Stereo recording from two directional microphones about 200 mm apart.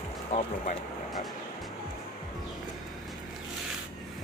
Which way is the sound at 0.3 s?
35° left (ahead or behind).